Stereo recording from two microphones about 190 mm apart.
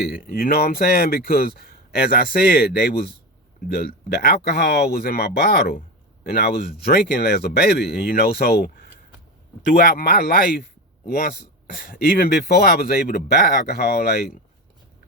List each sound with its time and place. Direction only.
0.1 s a man's voice: 50° left (ahead or behind)